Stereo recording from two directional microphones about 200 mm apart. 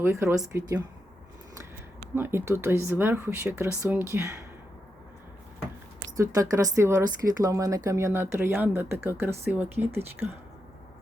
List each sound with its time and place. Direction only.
0.0 s speech: 15° right (ahead or behind)
2.1 s speech: 10° right (ahead or behind)
6.1 s speech: 15° right (ahead or behind)